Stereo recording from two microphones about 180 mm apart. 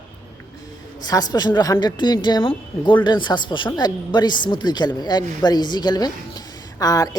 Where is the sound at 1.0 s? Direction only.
20° left (ahead or behind).